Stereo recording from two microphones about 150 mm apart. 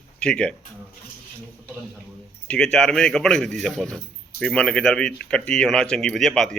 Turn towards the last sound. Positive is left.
turn(degrees=5)  # may be behind; listen again after turning